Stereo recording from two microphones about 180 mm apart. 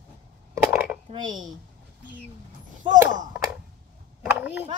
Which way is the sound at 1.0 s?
25° right (ahead or behind).